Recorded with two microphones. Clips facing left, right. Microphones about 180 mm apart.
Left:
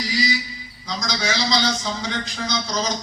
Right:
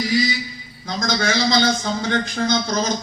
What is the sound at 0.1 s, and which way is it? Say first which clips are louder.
Mantra: right 3 dB; 55° right (ahead or behind).